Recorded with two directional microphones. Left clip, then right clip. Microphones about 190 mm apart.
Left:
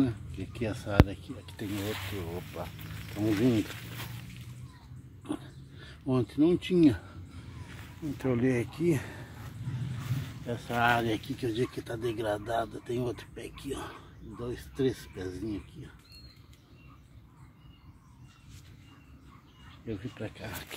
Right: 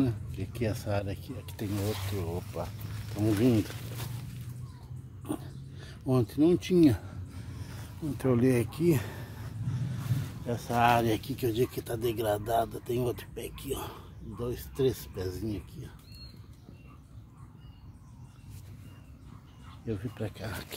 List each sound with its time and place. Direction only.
0.0 s speech: centre (ahead or behind)
3.2 s speech: 15° left (ahead or behind)
5.2 s a sound: centre (ahead or behind)
8.2 s speech: 5° right (ahead or behind)
10.4 s speech: centre (ahead or behind)
19.9 s speech: centre (ahead or behind)